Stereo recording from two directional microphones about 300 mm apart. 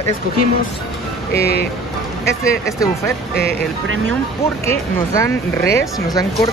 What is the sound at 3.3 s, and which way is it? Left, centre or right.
Speech, left.